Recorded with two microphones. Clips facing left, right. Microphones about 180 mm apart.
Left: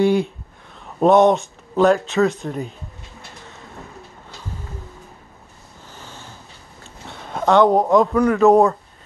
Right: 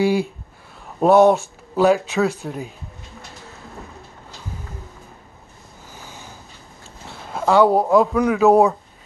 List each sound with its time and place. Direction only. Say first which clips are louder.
0.0 s speech: left 2 dB; 5° right (ahead or behind)
5.9 s a sound: even; 10° right (ahead or behind)
7.1 s speech: left 1 dB; 5° right (ahead or behind)